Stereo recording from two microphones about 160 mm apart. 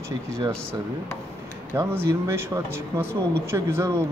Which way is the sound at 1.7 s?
15° right (ahead or behind).